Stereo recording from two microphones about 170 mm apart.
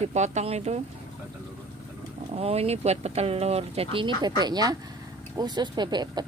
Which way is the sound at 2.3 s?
35° right (ahead or behind).